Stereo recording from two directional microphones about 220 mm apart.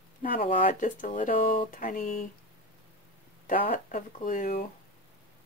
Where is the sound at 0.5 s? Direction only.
35° left (ahead or behind).